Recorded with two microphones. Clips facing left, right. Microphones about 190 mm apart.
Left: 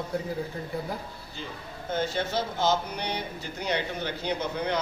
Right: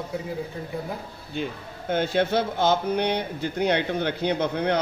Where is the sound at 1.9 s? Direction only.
60° right (ahead or behind).